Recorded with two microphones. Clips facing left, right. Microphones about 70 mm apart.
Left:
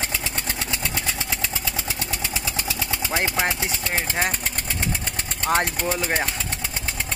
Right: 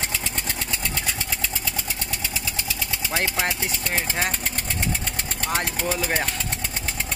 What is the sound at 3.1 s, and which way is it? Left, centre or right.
Speech, left.